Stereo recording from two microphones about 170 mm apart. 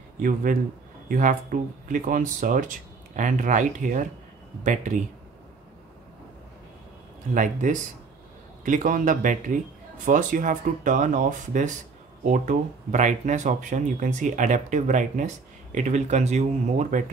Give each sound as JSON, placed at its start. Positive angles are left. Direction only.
{"t": 0.2, "sound": "a man's voice", "side_deg": -55}
{"t": 7.3, "sound": "speech", "side_deg": -50}